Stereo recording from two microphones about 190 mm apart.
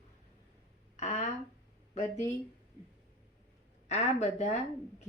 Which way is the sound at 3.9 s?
35° left (ahead or behind).